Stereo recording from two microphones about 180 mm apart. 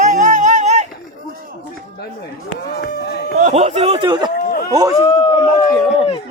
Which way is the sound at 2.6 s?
60° left (ahead or behind).